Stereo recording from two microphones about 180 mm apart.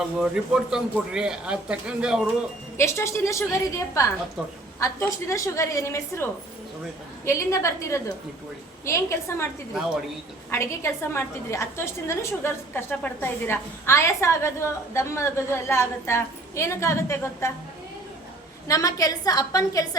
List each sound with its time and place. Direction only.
0.0 s speech: 5° right (ahead or behind)
2.7 s a woman's voice: 15° left (ahead or behind)
7.3 s a woman's voice: 15° left (ahead or behind)
10.5 s a woman's voice: 15° left (ahead or behind)
18.7 s a woman's voice: 20° left (ahead or behind)